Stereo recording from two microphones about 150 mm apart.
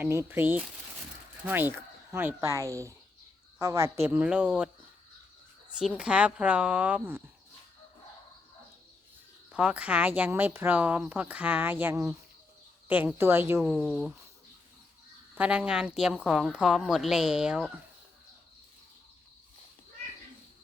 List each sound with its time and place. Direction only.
0.0 s speech: 15° right (ahead or behind)
4.0 s speech: 10° right (ahead or behind)
5.8 s speech: 5° right (ahead or behind)
9.5 s a woman's voice: 5° right (ahead or behind)
15.4 s a woman's voice: 5° right (ahead or behind)